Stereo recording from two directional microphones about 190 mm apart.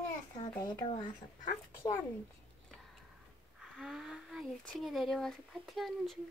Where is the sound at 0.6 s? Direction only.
20° left (ahead or behind).